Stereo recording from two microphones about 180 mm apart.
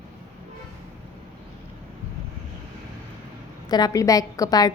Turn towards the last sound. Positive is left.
turn(degrees=20)  # may be behind; listen again after turning